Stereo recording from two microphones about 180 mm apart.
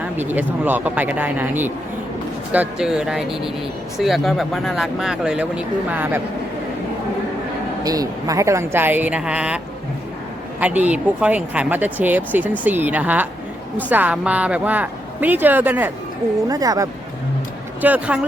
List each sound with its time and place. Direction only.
0.0 s speech: 10° right (ahead or behind)
7.9 s speech: 20° right (ahead or behind)
10.6 s speech: 5° right (ahead or behind)
16.5 s speech: 20° right (ahead or behind)
17.7 s speech: 10° right (ahead or behind)